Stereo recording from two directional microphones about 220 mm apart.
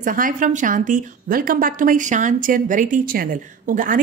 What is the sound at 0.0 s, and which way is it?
A woman's voice, 40° right (ahead or behind).